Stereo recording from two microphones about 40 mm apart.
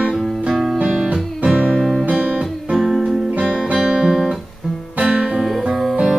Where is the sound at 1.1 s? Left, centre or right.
Right.